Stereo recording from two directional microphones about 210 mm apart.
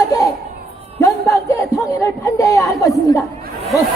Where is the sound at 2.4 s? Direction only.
15° left (ahead or behind).